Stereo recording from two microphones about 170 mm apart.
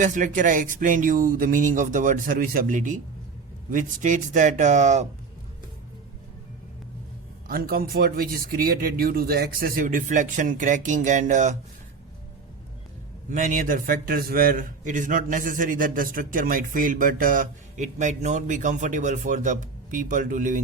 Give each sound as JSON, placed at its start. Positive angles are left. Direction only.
{"t": 0.0, "sound": "a man's voice", "side_deg": -50}
{"t": 7.4, "sound": "speech", "side_deg": -60}
{"t": 13.3, "sound": "a man's voice", "side_deg": -50}